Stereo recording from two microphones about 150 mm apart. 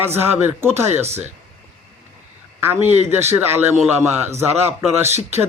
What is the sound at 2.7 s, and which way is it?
Speech, 45° right (ahead or behind).